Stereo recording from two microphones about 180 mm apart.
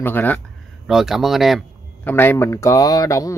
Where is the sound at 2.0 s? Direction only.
10° left (ahead or behind).